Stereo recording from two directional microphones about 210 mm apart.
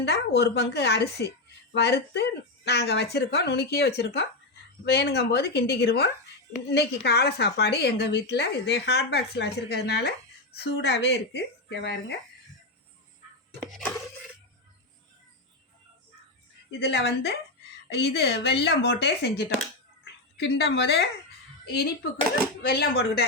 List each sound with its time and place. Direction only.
0.0 s a woman's voice: 50° left (ahead or behind)
13.7 s a sound: centre (ahead or behind)
16.8 s a woman's voice: 55° left (ahead or behind)
22.6 s a woman's voice: 45° left (ahead or behind)